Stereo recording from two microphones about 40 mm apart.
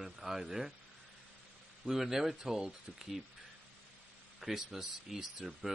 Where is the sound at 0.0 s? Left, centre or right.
Centre.